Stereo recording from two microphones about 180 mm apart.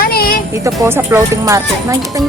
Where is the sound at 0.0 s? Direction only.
55° left (ahead or behind).